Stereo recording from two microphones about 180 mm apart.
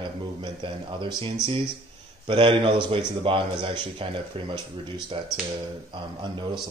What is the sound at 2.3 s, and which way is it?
A man's voice, 30° right (ahead or behind).